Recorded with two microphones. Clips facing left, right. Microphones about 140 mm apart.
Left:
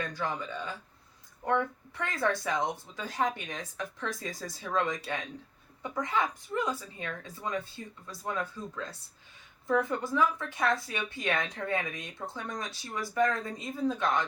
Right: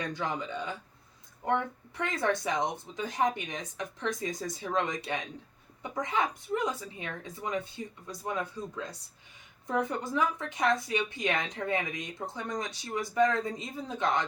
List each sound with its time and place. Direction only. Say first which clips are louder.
0.1 s speech: right 1 dB; 20° right (ahead or behind)